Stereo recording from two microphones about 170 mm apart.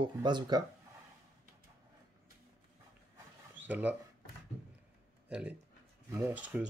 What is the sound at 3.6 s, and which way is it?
Speech, 10° right (ahead or behind).